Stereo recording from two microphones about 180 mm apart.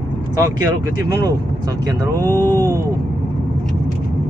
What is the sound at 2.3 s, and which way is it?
Speech, 10° left (ahead or behind).